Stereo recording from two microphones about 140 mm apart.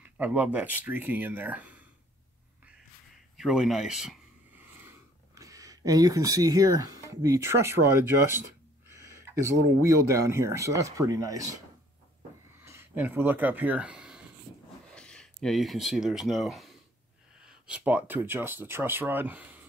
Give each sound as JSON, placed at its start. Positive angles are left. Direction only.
{"t": 0.0, "sound": "speech", "side_deg": -10}
{"t": 3.3, "sound": "speech", "side_deg": -5}
{"t": 4.6, "sound": "speech", "side_deg": -15}
{"t": 12.6, "sound": "speech", "side_deg": -15}
{"t": 15.0, "sound": "speech", "side_deg": 5}